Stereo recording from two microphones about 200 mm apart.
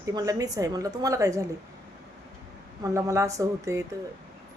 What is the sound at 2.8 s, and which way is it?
Speech, 15° right (ahead or behind).